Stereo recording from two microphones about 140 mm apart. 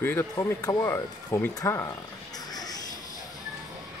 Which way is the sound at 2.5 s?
30° left (ahead or behind).